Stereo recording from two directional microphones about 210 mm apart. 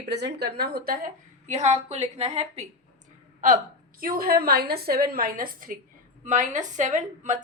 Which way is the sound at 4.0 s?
45° right (ahead or behind).